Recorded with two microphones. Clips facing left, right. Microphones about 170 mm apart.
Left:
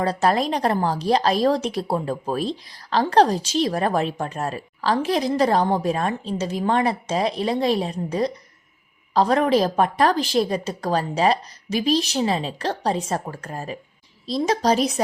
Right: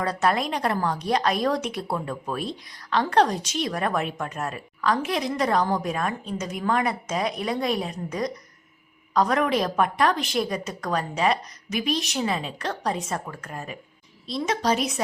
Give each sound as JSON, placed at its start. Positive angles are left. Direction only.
{"t": 0.0, "sound": "a woman's voice", "side_deg": 30}